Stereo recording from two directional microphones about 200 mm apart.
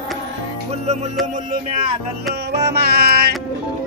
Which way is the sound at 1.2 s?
40° right (ahead or behind).